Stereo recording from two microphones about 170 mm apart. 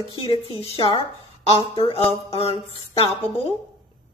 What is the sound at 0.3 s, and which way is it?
Music, 35° left (ahead or behind).